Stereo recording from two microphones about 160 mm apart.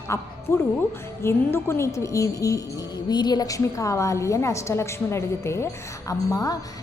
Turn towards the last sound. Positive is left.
turn(degrees=20)  # may be behind; listen again after turning